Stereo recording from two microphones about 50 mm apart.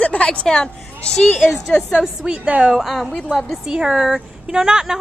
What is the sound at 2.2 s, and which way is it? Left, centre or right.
Speech, right.